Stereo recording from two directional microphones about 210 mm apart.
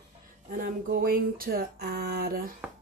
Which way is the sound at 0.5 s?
45° right (ahead or behind).